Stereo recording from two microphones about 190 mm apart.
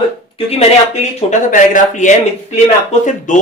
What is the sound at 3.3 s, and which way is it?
Speech, 40° left (ahead or behind).